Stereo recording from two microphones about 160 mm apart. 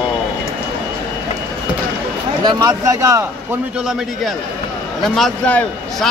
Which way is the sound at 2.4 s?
25° right (ahead or behind).